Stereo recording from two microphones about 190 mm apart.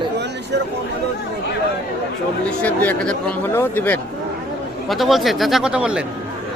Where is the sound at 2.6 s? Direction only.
5° left (ahead or behind).